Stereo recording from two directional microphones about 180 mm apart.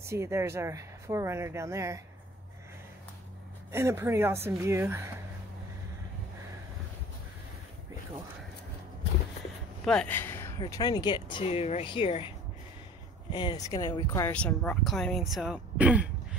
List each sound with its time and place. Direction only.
0.0 s speech: 15° right (ahead or behind)
3.7 s speech: 15° right (ahead or behind)
9.8 s speech: 5° left (ahead or behind)
10.6 s speech: 25° left (ahead or behind)
13.3 s speech: 25° left (ahead or behind); by 16.1 s 5° right (ahead or behind)